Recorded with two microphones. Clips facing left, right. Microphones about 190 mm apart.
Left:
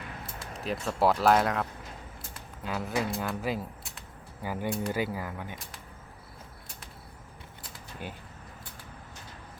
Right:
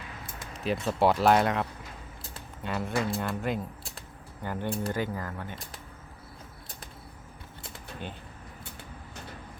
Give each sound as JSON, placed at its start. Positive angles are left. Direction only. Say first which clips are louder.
{"t": 0.5, "sound": "speech", "louder": "right 3 dB", "side_deg": 0}